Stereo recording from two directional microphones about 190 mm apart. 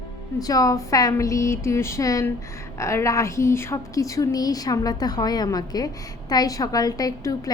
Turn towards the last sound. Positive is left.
turn(degrees=20)  # may be behind; listen again after turning